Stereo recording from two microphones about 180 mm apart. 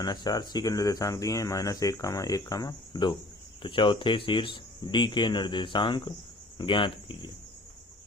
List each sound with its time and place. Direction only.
0.0 s speech: 25° left (ahead or behind)